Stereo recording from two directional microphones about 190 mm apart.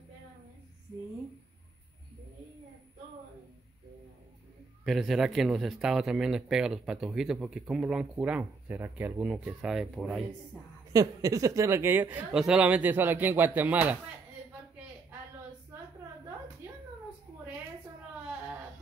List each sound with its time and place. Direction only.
4.8 s speech: centre (ahead or behind)
10.9 s a woman's voice: 20° right (ahead or behind)